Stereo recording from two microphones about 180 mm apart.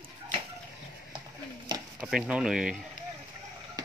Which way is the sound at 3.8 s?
20° right (ahead or behind).